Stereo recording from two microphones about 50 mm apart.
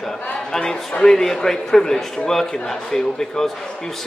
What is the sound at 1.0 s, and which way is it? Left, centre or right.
Speech, centre.